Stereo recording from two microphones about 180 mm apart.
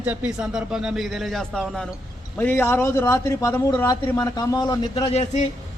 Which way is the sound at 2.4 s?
15° left (ahead or behind).